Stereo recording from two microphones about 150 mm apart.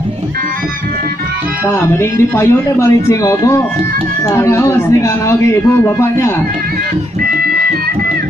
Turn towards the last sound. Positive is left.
turn(degrees=15)  # may be behind; listen again after turning